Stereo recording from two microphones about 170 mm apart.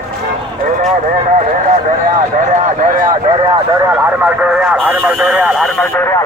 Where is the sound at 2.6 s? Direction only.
50° right (ahead or behind).